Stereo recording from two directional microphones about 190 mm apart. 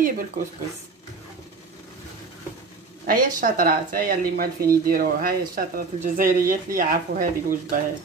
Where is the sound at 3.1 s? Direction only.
45° right (ahead or behind).